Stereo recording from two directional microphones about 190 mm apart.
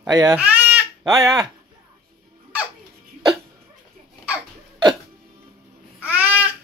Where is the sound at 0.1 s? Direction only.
20° right (ahead or behind).